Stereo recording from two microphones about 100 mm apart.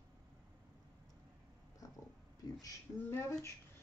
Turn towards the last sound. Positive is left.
turn(degrees=20)  # may be behind; listen again after turning